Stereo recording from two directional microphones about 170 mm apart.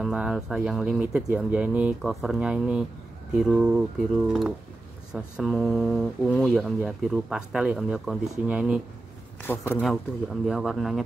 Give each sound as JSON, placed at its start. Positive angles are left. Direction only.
{"t": 0.0, "sound": "speech", "side_deg": -5}